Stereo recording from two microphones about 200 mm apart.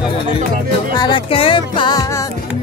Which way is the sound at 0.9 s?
20° left (ahead or behind).